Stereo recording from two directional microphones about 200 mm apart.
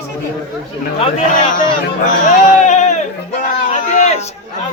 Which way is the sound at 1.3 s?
40° left (ahead or behind).